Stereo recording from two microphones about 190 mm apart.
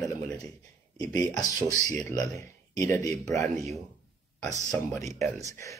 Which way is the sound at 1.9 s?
15° left (ahead or behind).